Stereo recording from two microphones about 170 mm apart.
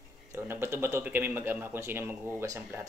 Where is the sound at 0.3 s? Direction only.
15° right (ahead or behind).